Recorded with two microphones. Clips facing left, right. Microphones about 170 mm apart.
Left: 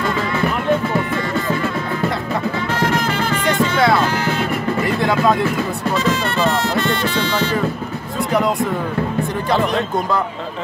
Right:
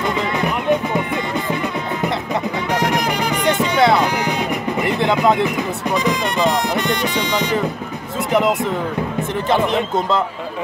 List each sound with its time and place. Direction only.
0.0 s music: 15° right (ahead or behind)
8.3 s a sound: 20° right (ahead or behind)
9.5 s speech: 20° right (ahead or behind)